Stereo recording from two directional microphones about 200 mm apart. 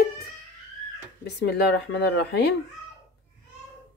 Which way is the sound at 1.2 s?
55° left (ahead or behind).